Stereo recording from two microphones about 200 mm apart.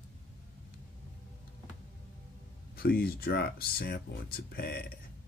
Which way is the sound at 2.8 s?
50° left (ahead or behind).